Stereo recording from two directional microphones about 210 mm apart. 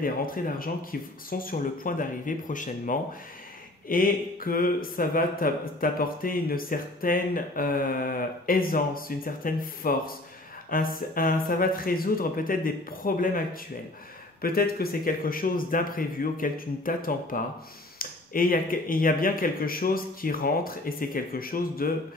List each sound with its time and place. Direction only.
0.0 s speech: 40° left (ahead or behind)